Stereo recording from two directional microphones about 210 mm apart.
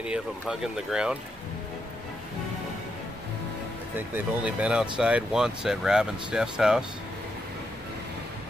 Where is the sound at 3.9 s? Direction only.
10° right (ahead or behind).